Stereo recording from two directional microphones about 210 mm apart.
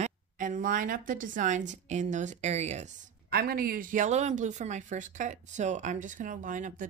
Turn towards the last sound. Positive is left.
turn(degrees=-35)  # may be behind; listen again after turning